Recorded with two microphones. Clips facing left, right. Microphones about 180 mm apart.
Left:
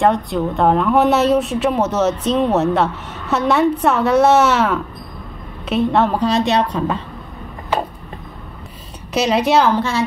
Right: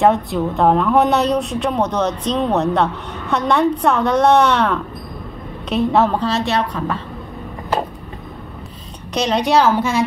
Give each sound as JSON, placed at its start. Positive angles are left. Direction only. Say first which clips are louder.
{"t": 0.0, "sound": "a woman's voice", "louder": "right 1 dB", "side_deg": 0}
{"t": 6.1, "sound": "a woman's voice", "louder": "left 3 dB", "side_deg": 15}
{"t": 9.1, "sound": "a woman's voice", "louder": "left 1 dB", "side_deg": 5}
{"t": 9.8, "sound": "speech", "louder": "right 1 dB", "side_deg": -15}